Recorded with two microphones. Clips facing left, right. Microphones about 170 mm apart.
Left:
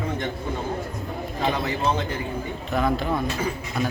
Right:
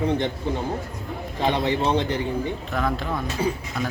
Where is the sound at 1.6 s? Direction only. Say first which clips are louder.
Right 3 dB; 30° right (ahead or behind).